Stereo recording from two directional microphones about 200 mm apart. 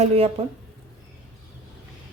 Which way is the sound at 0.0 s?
30° right (ahead or behind).